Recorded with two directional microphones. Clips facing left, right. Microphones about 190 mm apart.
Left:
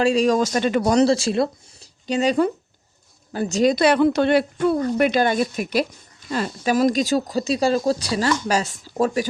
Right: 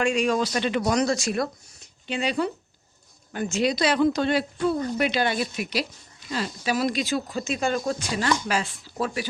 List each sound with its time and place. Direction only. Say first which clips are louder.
0.0 s speech: left 5 dB; 35° left (ahead or behind)
0.8 s speech: left 7 dB; 30° left (ahead or behind)
2.0 s speech: left 7 dB; 40° left (ahead or behind)